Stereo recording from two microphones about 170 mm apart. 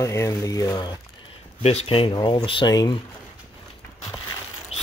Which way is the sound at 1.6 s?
35° left (ahead or behind).